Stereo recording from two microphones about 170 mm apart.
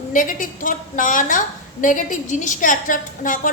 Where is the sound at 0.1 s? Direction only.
50° left (ahead or behind).